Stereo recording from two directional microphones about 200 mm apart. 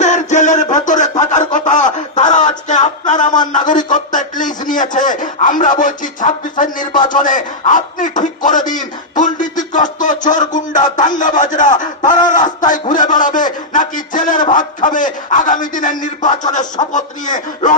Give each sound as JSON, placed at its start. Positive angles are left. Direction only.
{"t": 0.0, "sound": "music", "side_deg": 35}
{"t": 3.5, "sound": "a man's voice", "side_deg": 40}